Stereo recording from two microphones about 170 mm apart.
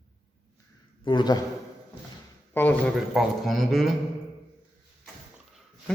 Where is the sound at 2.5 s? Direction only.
10° left (ahead or behind).